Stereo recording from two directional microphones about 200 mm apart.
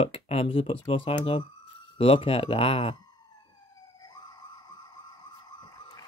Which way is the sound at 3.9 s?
20° left (ahead or behind).